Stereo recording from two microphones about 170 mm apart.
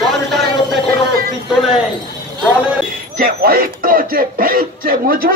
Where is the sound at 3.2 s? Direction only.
60° right (ahead or behind).